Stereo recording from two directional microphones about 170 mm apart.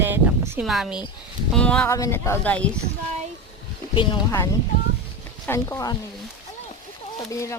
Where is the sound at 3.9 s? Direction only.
30° left (ahead or behind).